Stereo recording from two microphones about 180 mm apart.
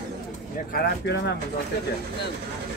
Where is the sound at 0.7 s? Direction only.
70° left (ahead or behind).